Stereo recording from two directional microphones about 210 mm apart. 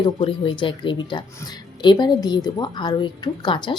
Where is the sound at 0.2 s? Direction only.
25° left (ahead or behind).